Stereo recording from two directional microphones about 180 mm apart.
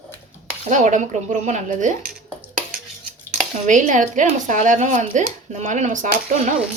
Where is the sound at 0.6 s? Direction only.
40° right (ahead or behind).